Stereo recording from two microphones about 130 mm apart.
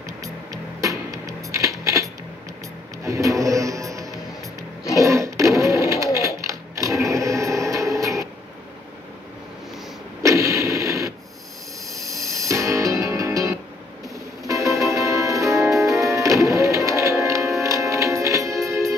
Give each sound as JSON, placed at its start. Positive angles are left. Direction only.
{"t": 0.0, "sound": "music", "side_deg": -25}
{"t": 4.9, "sound": "sewing machine", "side_deg": -25}
{"t": 10.2, "sound": "a sound", "side_deg": -25}
{"t": 12.0, "sound": "music", "side_deg": -25}